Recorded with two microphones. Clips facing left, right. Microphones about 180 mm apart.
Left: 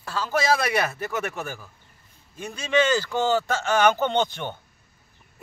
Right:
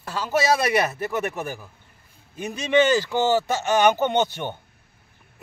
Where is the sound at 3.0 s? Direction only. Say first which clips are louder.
Right 2 dB; 15° right (ahead or behind).